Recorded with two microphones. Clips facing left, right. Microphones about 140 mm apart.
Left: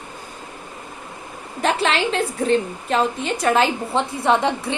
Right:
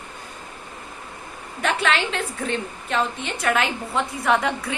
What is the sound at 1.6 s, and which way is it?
A woman's voice, 35° left (ahead or behind).